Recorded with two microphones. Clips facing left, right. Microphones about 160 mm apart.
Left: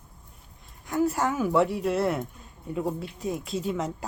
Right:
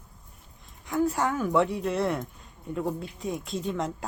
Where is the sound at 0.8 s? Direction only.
Centre (ahead or behind).